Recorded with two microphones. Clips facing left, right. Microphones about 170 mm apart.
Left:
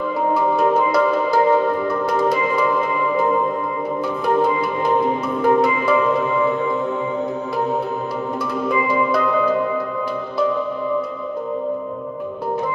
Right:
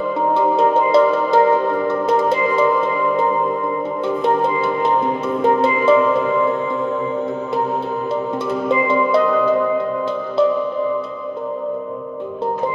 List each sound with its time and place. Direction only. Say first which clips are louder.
0.6 s music: right 5 dB; 25° right (ahead or behind)
5.4 s music: right 1 dB; 25° right (ahead or behind)
8.6 s music: right 2 dB; 25° right (ahead or behind)